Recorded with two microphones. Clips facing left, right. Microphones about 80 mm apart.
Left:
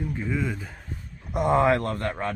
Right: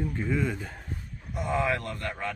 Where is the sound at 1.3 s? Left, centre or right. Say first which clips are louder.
Left 7 dB; left.